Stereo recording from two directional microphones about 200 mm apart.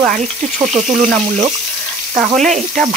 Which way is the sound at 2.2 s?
Centre (ahead or behind).